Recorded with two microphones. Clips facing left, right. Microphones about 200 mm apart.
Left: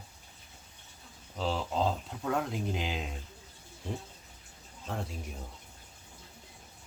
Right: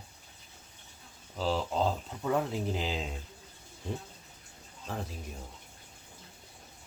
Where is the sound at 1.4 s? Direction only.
Centre (ahead or behind).